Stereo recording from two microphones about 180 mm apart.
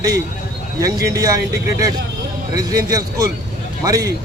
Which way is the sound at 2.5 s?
20° right (ahead or behind).